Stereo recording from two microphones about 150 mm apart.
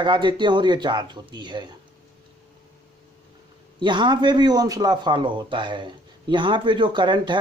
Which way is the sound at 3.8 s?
30° right (ahead or behind).